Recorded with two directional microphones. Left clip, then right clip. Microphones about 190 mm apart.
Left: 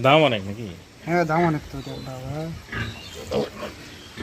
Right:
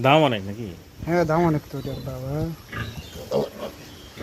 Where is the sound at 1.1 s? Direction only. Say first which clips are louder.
Even; 60° right (ahead or behind).